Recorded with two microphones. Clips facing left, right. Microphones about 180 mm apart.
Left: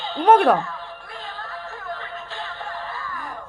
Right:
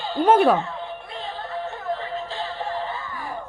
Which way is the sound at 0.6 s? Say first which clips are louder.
Right 2 dB; 25° right (ahead or behind).